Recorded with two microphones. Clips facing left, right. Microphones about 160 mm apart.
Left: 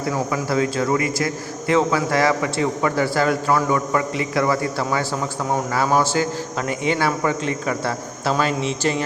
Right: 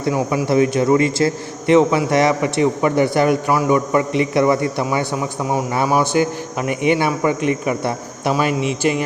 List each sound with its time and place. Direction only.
0.1 s a man's voice: 15° right (ahead or behind)